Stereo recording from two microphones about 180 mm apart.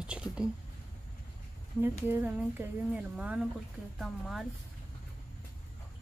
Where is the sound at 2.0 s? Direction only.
10° right (ahead or behind).